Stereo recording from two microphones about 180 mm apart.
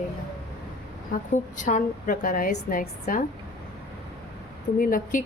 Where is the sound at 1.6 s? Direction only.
45° left (ahead or behind).